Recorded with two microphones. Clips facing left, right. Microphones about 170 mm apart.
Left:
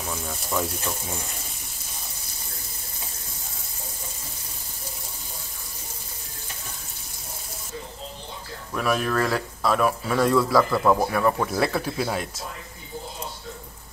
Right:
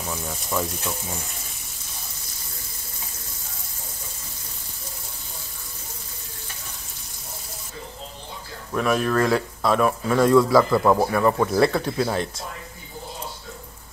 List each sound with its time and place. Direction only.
0.1 s speech: centre (ahead or behind)
8.7 s speech: centre (ahead or behind)